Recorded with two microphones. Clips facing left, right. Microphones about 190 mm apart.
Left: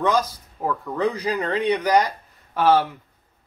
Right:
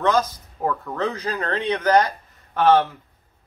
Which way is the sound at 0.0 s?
10° left (ahead or behind).